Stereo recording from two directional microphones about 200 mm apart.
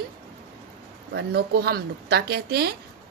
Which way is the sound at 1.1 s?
55° right (ahead or behind).